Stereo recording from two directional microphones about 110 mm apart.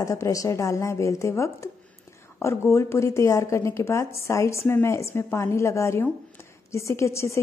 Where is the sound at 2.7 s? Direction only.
25° left (ahead or behind).